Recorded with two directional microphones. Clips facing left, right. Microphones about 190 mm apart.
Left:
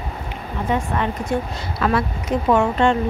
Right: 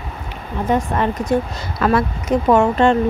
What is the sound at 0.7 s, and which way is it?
Speech, 40° right (ahead or behind).